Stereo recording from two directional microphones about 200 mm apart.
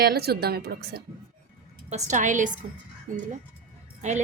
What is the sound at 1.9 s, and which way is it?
A woman's voice, 40° right (ahead or behind).